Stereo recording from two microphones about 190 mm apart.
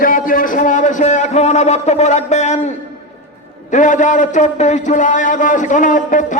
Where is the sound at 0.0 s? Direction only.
45° left (ahead or behind).